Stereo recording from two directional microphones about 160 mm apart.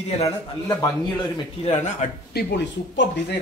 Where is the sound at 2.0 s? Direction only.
50° left (ahead or behind).